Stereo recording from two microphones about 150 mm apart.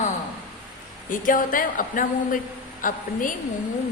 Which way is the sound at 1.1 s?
65° left (ahead or behind).